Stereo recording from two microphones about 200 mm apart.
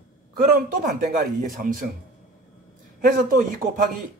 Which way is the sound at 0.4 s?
45° right (ahead or behind).